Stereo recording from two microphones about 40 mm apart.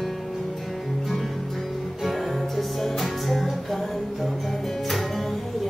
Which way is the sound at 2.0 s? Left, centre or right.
Centre.